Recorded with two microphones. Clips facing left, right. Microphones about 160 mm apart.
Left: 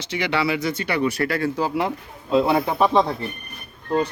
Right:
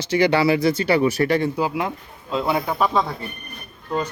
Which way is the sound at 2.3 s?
25° left (ahead or behind).